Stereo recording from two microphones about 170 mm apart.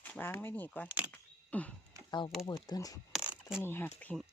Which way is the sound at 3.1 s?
5° right (ahead or behind).